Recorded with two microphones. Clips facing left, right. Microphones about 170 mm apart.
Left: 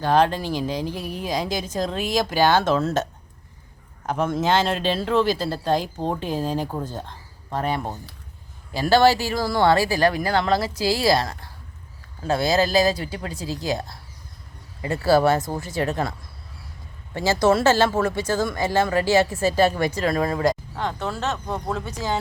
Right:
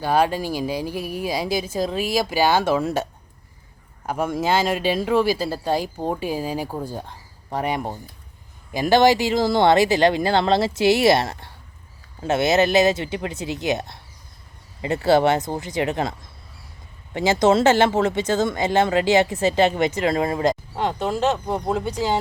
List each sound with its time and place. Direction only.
0.0 s speech: 10° right (ahead or behind)
17.2 s speech: 20° right (ahead or behind)